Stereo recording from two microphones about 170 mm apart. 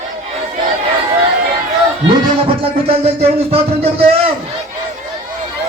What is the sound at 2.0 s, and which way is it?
Music, 35° right (ahead or behind).